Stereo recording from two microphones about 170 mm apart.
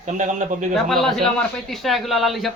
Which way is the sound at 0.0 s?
45° right (ahead or behind).